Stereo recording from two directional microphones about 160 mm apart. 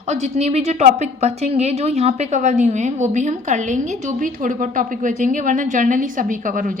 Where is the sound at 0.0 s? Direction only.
45° right (ahead or behind).